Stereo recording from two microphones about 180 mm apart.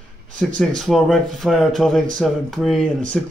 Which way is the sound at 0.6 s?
Centre (ahead or behind).